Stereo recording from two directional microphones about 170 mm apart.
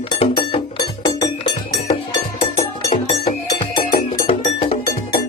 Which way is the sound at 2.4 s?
40° left (ahead or behind).